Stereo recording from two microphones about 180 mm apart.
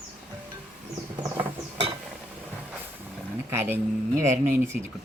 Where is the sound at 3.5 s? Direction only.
10° right (ahead or behind).